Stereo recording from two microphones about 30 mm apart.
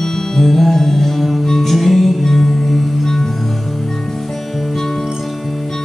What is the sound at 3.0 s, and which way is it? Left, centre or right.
Music, centre.